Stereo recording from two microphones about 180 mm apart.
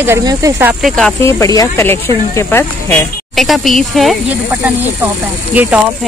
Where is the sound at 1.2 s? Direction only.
20° left (ahead or behind).